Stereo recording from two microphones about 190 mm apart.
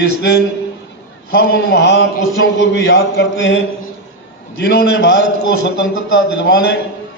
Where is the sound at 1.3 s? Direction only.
65° left (ahead or behind).